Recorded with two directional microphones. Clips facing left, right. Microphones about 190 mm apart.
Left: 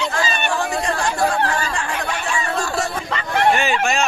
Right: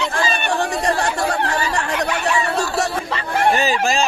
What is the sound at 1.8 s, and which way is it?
Chatter, 65° right (ahead or behind).